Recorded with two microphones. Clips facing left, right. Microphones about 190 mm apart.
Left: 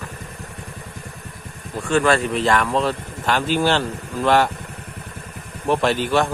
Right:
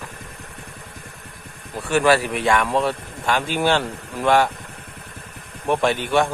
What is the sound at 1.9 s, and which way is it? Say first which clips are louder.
Speech: right 1 dB; 15° right (ahead or behind).